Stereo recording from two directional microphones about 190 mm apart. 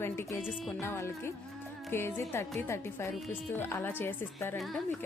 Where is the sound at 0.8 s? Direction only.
15° left (ahead or behind).